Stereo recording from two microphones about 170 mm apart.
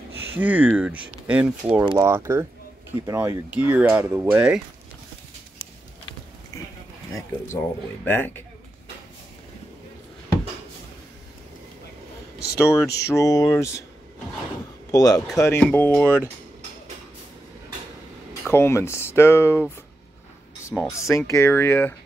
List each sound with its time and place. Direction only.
0.3 s speech: 10° right (ahead or behind)
1.9 s speech: 20° right (ahead or behind)
8.0 s speech: 10° left (ahead or behind)
12.5 s speech: 20° left (ahead or behind)
14.9 s a man's voice: 20° left (ahead or behind)
18.5 s speech: 15° left (ahead or behind)
20.7 s speech: 5° left (ahead or behind)
21.1 s speech: 15° left (ahead or behind)